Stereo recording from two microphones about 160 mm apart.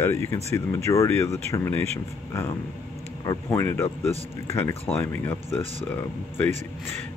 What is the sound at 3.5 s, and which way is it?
A man's voice, 15° left (ahead or behind).